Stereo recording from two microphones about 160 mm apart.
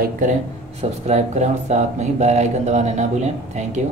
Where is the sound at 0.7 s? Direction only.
45° right (ahead or behind).